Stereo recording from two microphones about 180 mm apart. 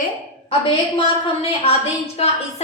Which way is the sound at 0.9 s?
35° left (ahead or behind).